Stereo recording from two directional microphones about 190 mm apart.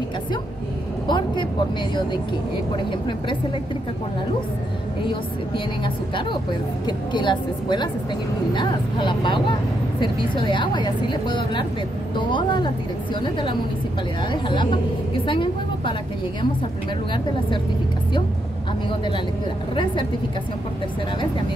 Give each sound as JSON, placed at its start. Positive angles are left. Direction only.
{"t": 1.0, "sound": "speech", "side_deg": 25}
{"t": 2.7, "sound": "speech", "side_deg": 25}
{"t": 6.9, "sound": "a woman's voice", "side_deg": 25}
{"t": 19.7, "sound": "speech", "side_deg": 25}